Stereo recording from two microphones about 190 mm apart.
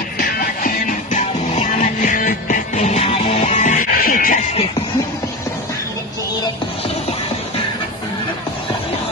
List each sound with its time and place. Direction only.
0.2 s music: 50° left (ahead or behind)